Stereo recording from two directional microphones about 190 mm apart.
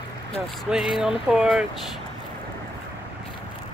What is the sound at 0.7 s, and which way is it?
Speech, centre (ahead or behind).